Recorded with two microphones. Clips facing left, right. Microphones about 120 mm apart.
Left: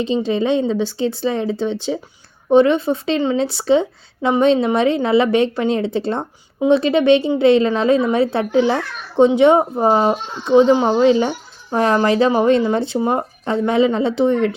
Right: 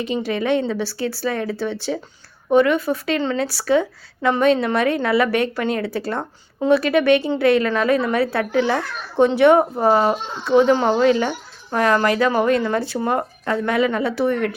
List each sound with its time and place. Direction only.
0.0 s a woman's voice: 20° left (ahead or behind)